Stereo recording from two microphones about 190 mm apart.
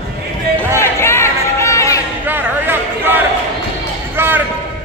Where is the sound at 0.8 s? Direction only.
15° left (ahead or behind).